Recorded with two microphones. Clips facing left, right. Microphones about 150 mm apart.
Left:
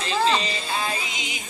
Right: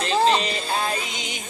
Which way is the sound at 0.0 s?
35° right (ahead or behind).